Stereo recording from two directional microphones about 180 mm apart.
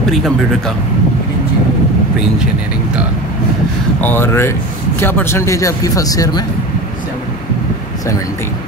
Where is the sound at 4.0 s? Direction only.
10° left (ahead or behind).